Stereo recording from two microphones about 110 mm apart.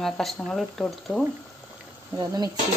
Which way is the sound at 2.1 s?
35° right (ahead or behind).